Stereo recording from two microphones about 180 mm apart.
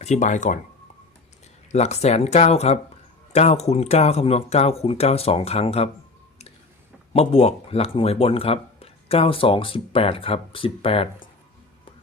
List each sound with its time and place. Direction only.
0.0 s speech: 40° left (ahead or behind)
1.7 s speech: 40° left (ahead or behind)
7.1 s speech: 35° left (ahead or behind)